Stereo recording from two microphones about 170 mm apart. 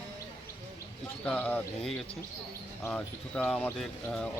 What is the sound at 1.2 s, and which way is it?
Speech, 10° left (ahead or behind).